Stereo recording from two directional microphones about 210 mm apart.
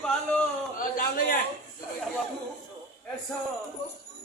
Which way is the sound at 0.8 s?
40° left (ahead or behind).